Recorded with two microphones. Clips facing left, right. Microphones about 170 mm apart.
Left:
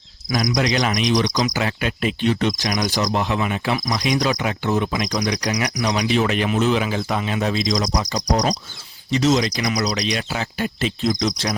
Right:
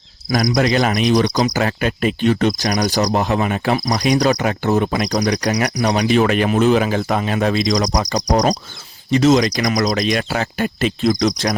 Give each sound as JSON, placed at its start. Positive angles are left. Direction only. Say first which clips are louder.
{"t": 0.5, "sound": "speech", "louder": "right 4 dB", "side_deg": -50}
{"t": 6.1, "sound": "speech", "louder": "right 5 dB", "side_deg": -50}
{"t": 9.0, "sound": "speech", "louder": "right 5 dB", "side_deg": -55}